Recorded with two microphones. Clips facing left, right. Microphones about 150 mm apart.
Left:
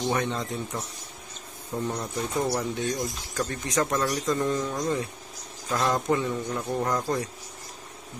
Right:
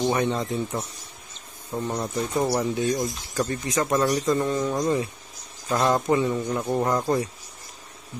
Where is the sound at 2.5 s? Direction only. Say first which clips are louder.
Right 4 dB; 5° right (ahead or behind).